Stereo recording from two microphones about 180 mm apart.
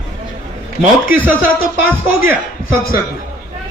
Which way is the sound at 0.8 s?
10° right (ahead or behind).